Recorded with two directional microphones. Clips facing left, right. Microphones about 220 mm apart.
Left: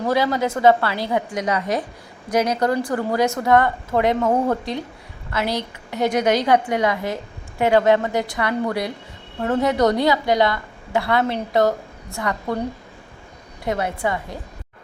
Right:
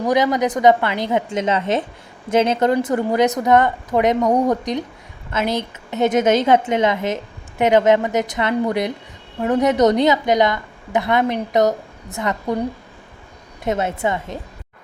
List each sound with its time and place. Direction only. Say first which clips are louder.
0.1 s a woman's voice: right 3 dB; 20° right (ahead or behind)
13.7 s a woman's voice: right 2 dB; 25° right (ahead or behind)